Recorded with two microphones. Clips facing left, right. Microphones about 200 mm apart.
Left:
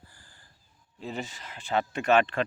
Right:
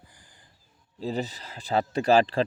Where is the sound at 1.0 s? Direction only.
35° right (ahead or behind).